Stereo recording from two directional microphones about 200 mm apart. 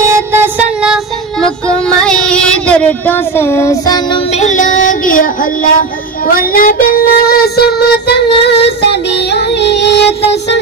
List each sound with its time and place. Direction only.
0.0 s child singing: 15° right (ahead or behind); by 4.2 s 20° left (ahead or behind)
4.3 s child singing: 35° left (ahead or behind); by 8.5 s 55° left (ahead or behind)
8.6 s music: 60° left (ahead or behind)